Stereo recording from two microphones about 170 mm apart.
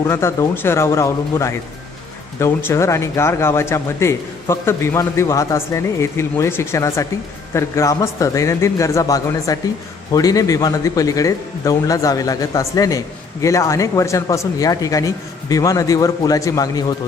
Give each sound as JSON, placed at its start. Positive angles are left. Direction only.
{"t": 0.0, "sound": "speech", "side_deg": 15}